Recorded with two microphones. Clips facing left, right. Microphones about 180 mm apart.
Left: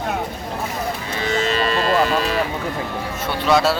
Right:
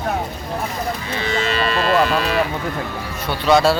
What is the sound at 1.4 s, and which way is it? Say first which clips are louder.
Livestock: even; 40° left (ahead or behind).